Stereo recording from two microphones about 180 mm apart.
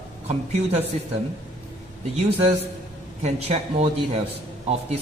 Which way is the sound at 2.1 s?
35° right (ahead or behind).